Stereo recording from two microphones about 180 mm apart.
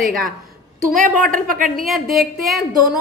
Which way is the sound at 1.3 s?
50° right (ahead or behind).